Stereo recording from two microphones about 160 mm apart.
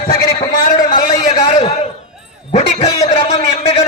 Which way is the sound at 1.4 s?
45° left (ahead or behind).